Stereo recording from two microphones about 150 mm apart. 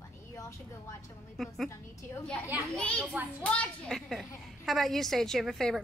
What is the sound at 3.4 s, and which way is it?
A woman's voice, 10° left (ahead or behind).